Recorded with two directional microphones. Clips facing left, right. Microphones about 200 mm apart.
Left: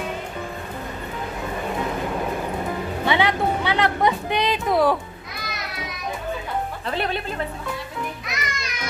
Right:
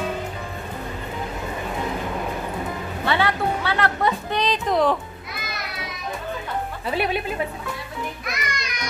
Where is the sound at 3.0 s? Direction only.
15° left (ahead or behind).